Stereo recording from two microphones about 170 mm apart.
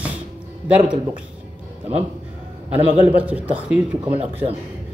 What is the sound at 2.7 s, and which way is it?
Speech, 10° right (ahead or behind).